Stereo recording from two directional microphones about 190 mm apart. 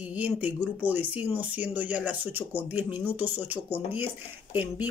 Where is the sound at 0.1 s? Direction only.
10° right (ahead or behind).